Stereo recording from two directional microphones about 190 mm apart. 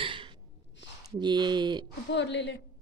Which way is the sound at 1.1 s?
25° right (ahead or behind).